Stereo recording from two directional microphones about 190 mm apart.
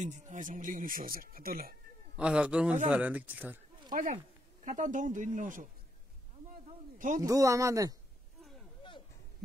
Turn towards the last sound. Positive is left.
turn(degrees=-15)  # may be behind; listen again after turning